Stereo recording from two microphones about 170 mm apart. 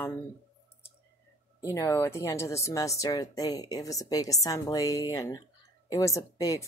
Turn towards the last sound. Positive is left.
turn(degrees=20)  # may be behind; listen again after turning